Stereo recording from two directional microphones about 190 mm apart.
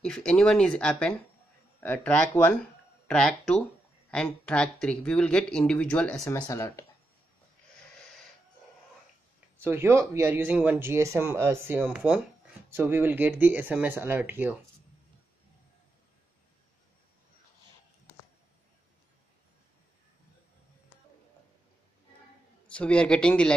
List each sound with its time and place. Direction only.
0.0 s speech: 5° left (ahead or behind)
6.4 s speech: 15° left (ahead or behind)
9.6 s speech: 10° right (ahead or behind)
22.7 s speech: 5° left (ahead or behind)